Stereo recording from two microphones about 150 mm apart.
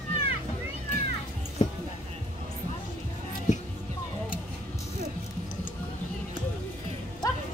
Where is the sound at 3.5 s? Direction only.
55° left (ahead or behind).